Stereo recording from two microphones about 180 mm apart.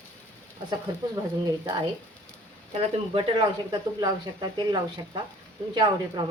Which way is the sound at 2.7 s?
25° right (ahead or behind).